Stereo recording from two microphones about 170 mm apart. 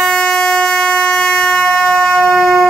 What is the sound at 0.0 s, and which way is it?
Air horn, 5° left (ahead or behind).